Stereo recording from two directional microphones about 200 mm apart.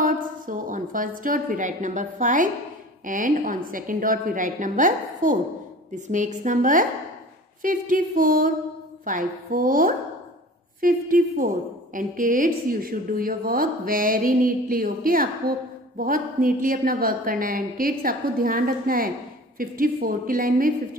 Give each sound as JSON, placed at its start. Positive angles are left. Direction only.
{"t": 0.0, "sound": "a woman's voice", "side_deg": -40}